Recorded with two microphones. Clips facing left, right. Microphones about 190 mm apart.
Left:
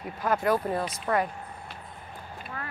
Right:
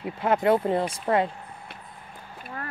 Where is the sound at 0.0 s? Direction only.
25° right (ahead or behind).